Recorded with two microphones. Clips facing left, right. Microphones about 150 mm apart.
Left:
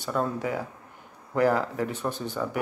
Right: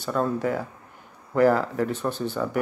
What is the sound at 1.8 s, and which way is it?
Speech, 15° left (ahead or behind).